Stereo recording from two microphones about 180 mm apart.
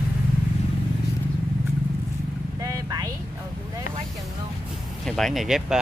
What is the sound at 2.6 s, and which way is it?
Vehicle, 20° right (ahead or behind).